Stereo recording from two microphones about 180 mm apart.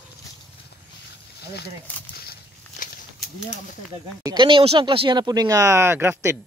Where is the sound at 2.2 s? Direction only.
60° left (ahead or behind).